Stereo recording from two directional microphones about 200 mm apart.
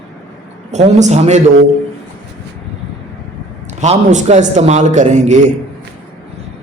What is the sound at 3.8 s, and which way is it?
A man's voice, 35° right (ahead or behind).